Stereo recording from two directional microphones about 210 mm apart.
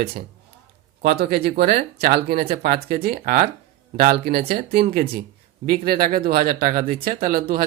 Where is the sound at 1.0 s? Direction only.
45° right (ahead or behind).